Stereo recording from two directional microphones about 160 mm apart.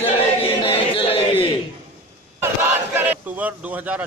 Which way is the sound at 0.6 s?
35° left (ahead or behind).